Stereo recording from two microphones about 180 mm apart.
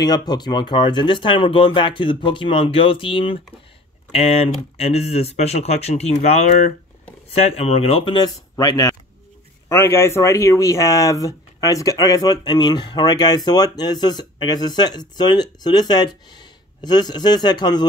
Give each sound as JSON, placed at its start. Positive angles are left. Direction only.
{"t": 0.0, "sound": "speech", "side_deg": 20}